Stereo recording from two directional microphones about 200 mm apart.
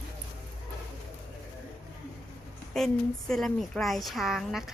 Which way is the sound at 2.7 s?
Centre (ahead or behind).